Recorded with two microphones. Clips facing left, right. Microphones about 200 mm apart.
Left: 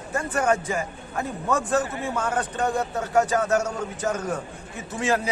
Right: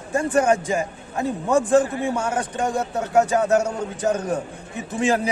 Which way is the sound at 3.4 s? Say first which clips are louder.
Right 4 dB; 35° right (ahead or behind).